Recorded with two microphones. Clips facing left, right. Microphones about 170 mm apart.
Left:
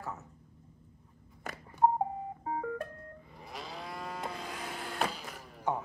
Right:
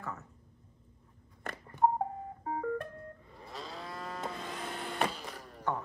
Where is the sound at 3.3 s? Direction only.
15° left (ahead or behind).